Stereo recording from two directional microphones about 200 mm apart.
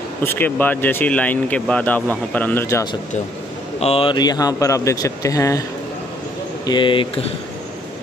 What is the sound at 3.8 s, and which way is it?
Speech, 30° left (ahead or behind).